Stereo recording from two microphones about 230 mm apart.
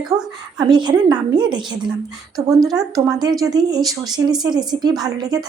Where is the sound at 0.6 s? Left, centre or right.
Centre.